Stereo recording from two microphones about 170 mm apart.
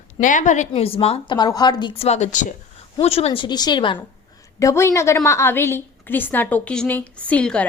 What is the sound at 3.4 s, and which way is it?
Speech, 25° left (ahead or behind).